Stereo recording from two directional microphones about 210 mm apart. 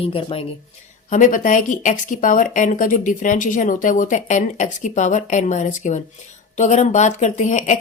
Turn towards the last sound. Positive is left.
turn(degrees=35)  # may be behind; listen again after turning